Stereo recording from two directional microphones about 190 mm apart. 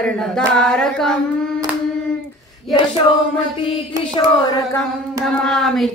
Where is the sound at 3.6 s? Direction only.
25° left (ahead or behind).